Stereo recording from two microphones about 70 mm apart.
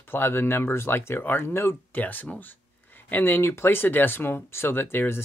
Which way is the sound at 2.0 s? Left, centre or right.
Left.